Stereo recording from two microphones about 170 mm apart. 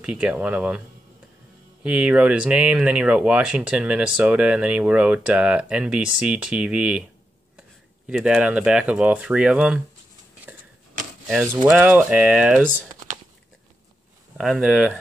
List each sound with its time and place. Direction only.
0.0 s speech: 5° right (ahead or behind)
8.1 s speech: centre (ahead or behind)
11.4 s speech: 15° right (ahead or behind); by 12.8 s centre (ahead or behind)
14.4 s speech: 5° right (ahead or behind)